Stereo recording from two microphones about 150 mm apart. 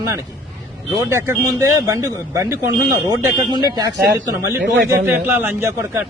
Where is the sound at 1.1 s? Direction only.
20° right (ahead or behind).